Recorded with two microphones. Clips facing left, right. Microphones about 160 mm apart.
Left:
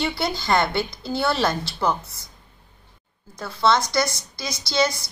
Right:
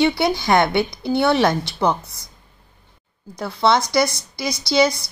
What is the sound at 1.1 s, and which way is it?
Speech, 20° right (ahead or behind).